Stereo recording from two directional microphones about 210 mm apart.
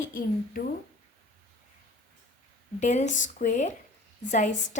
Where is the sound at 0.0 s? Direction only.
40° left (ahead or behind).